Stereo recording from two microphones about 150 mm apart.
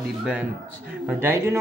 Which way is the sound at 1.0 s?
15° right (ahead or behind).